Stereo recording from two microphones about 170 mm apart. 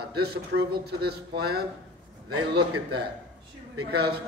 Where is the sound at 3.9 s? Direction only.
70° right (ahead or behind).